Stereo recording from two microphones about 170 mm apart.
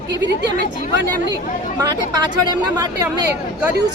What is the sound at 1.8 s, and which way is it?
Speech, 25° right (ahead or behind).